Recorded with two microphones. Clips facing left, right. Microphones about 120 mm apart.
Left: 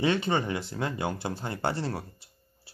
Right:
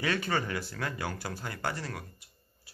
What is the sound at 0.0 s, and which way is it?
Speech, 25° left (ahead or behind).